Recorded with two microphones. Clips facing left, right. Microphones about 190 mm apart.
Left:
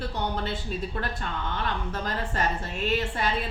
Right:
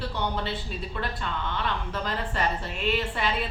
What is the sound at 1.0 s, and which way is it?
Speech, 45° left (ahead or behind).